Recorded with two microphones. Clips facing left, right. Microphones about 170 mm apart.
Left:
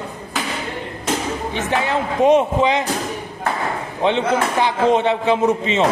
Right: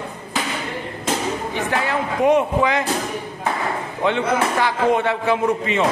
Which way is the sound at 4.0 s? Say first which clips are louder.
Left 2 dB; 20° left (ahead or behind).